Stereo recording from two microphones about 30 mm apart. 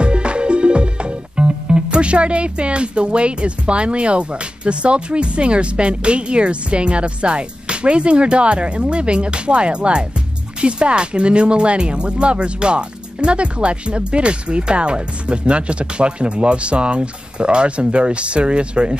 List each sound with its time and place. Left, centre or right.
0.0 s music: right
10.6 s speech: right